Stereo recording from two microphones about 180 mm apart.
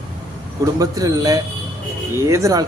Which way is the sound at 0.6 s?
20° right (ahead or behind).